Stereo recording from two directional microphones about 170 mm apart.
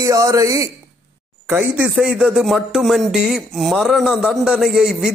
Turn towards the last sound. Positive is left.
turn(degrees=0)  # may be behind; listen again after turning